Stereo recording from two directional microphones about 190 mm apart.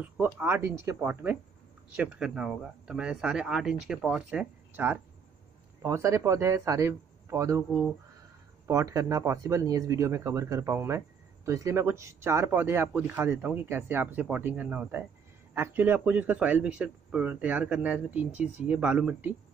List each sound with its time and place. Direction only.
0.0 s speech: 10° right (ahead or behind)
8.6 s speech: 15° right (ahead or behind)